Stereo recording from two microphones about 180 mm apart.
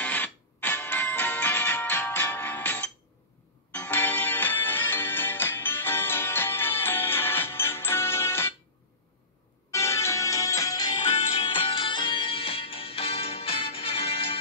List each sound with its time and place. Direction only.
0.0 s music: 10° left (ahead or behind)
9.7 s music: 15° left (ahead or behind); by 14.4 s 30° left (ahead or behind)